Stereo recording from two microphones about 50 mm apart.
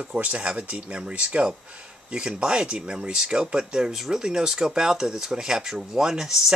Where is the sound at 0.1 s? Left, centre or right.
Right.